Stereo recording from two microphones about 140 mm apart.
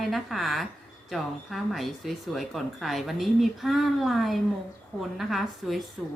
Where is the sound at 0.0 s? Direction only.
Centre (ahead or behind).